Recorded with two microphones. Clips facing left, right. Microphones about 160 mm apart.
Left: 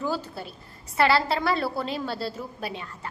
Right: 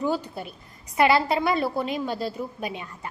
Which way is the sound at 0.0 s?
15° right (ahead or behind).